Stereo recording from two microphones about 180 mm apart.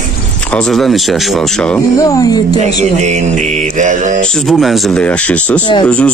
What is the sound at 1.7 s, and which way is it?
Speech, 20° left (ahead or behind).